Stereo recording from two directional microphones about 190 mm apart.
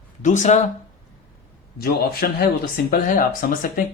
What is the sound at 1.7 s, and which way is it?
A man's voice, 55° left (ahead or behind).